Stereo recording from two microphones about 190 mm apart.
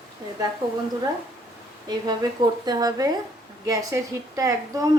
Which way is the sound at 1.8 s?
20° right (ahead or behind).